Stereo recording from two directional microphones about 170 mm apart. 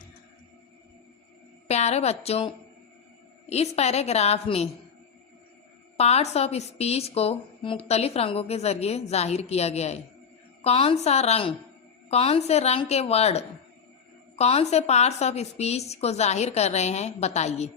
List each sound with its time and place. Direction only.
1.6 s a woman's voice: 40° left (ahead or behind)
3.5 s a woman's voice: 40° left (ahead or behind)
6.0 s a woman's voice: 40° left (ahead or behind)